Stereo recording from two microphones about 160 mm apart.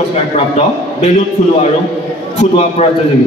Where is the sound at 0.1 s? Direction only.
45° left (ahead or behind).